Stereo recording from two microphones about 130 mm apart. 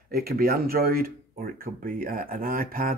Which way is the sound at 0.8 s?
90° right.